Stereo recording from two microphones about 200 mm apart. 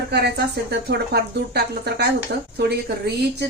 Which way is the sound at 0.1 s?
55° right (ahead or behind).